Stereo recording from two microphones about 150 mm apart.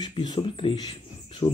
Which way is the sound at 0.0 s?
30° left (ahead or behind).